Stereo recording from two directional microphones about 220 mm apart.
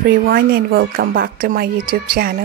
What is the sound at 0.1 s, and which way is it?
Speech, 45° right (ahead or behind).